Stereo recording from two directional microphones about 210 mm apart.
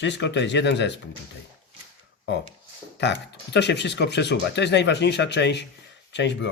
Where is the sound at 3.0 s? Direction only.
55° left (ahead or behind).